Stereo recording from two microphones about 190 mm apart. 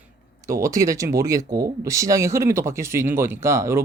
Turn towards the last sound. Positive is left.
turn(degrees=-15)  # may be behind; listen again after turning